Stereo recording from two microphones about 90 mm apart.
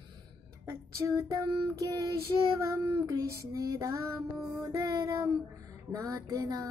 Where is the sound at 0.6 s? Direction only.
30° right (ahead or behind).